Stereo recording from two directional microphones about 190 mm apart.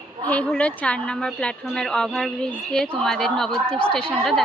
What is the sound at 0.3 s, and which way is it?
A woman's voice, 5° left (ahead or behind).